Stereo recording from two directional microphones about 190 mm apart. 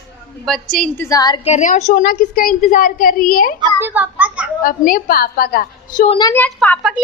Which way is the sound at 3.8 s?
10° right (ahead or behind).